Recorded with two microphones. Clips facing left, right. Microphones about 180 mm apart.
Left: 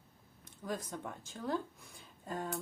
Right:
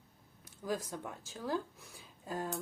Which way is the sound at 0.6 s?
5° right (ahead or behind).